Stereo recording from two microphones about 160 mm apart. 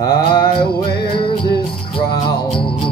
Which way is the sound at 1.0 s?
30° left (ahead or behind).